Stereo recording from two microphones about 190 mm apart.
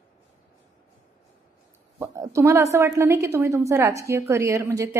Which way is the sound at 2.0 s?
15° right (ahead or behind).